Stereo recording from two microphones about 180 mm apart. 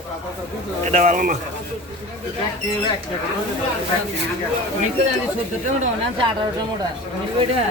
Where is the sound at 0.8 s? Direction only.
45° right (ahead or behind).